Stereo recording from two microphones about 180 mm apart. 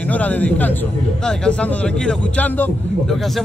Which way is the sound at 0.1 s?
10° left (ahead or behind).